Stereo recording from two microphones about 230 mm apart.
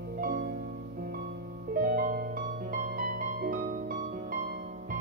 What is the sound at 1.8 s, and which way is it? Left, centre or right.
Music, right.